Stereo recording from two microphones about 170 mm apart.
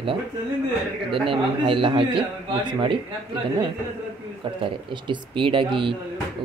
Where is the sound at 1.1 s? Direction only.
30° right (ahead or behind).